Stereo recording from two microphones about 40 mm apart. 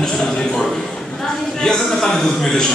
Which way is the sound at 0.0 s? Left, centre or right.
Centre.